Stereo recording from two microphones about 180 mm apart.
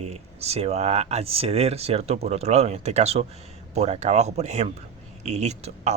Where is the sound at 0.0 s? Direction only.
35° right (ahead or behind).